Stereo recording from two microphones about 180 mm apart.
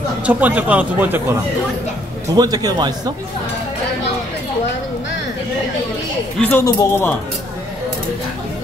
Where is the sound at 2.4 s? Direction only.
20° right (ahead or behind).